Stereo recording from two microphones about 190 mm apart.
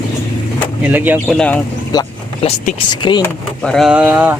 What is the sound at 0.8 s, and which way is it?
Speech, 10° right (ahead or behind).